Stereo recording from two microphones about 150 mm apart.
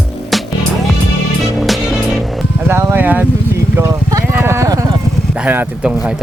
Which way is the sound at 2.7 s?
15° right (ahead or behind).